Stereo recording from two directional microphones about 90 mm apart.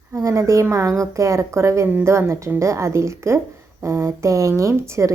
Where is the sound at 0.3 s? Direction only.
35° right (ahead or behind).